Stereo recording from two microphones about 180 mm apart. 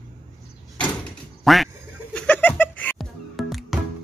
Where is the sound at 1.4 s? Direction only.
Centre (ahead or behind).